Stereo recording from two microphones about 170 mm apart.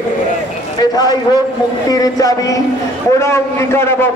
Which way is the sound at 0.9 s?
25° left (ahead or behind).